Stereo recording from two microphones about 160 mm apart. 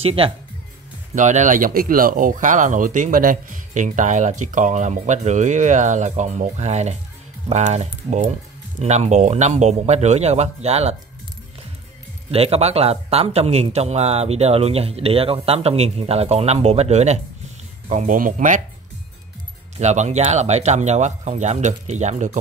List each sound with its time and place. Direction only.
0.0 s speech: 35° right (ahead or behind)
1.1 s speech: 50° right (ahead or behind)
12.3 s speech: 40° right (ahead or behind); by 18.6 s 55° right (ahead or behind)
19.8 s speech: 45° right (ahead or behind)